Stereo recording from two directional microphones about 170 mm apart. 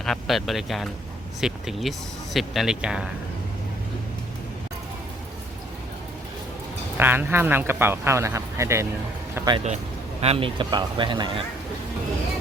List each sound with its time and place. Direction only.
0.0 s speech: centre (ahead or behind)
6.9 s speech: 10° right (ahead or behind)
9.3 s a sound: 20° right (ahead or behind)
10.2 s speech: 35° right (ahead or behind)